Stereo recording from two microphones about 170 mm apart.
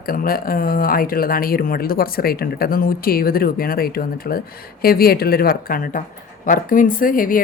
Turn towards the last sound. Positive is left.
turn(degrees=55)  # may be behind; listen again after turning